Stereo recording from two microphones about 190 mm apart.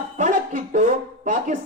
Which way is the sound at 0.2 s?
40° right (ahead or behind).